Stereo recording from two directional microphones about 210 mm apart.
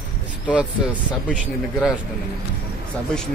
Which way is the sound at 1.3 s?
Centre (ahead or behind).